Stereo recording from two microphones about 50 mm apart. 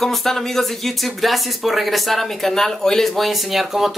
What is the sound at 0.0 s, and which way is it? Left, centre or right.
Speech, centre.